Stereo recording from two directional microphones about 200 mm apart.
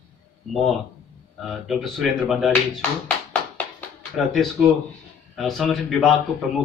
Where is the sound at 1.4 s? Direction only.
Centre (ahead or behind).